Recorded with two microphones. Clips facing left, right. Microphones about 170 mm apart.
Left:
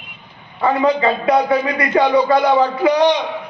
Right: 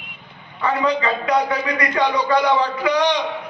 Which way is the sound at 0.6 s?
30° left (ahead or behind).